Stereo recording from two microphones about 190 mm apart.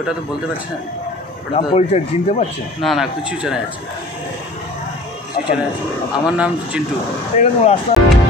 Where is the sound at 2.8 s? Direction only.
Centre (ahead or behind).